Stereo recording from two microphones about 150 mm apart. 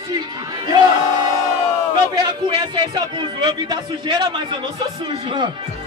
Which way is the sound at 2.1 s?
25° right (ahead or behind).